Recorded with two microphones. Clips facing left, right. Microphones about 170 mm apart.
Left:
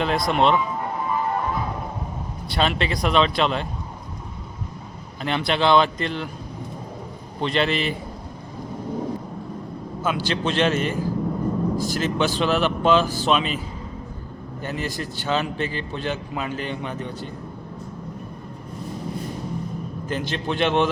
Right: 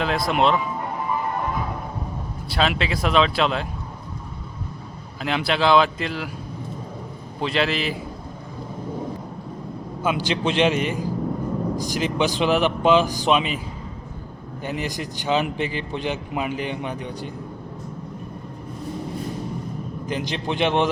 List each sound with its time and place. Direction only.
0.0 s speech: centre (ahead or behind)
2.5 s speech: centre (ahead or behind)
5.2 s speech: 5° right (ahead or behind)
7.4 s speech: centre (ahead or behind)
10.0 s a man's voice: 15° right (ahead or behind)
14.6 s a man's voice: 15° right (ahead or behind)
20.1 s a man's voice: 15° right (ahead or behind)